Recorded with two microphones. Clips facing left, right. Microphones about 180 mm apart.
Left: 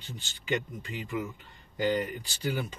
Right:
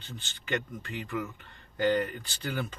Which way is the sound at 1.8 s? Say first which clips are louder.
Right 2 dB; 10° left (ahead or behind).